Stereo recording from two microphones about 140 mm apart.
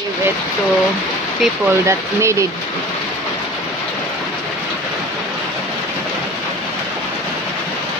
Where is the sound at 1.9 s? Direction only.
20° right (ahead or behind).